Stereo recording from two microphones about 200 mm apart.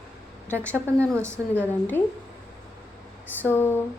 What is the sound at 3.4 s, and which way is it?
Speech, 10° left (ahead or behind).